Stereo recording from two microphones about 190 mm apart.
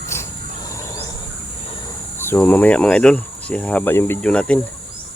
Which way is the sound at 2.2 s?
10° left (ahead or behind).